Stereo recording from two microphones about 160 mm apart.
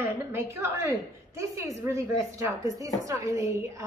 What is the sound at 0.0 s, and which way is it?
A woman's voice, 15° right (ahead or behind).